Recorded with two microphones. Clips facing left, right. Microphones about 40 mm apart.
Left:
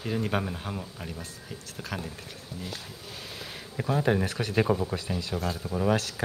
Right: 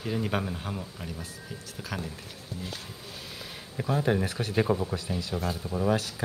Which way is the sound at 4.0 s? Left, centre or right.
Centre.